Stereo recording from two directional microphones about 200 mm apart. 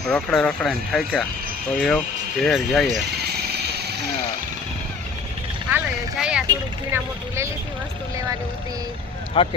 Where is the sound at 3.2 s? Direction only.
55° right (ahead or behind).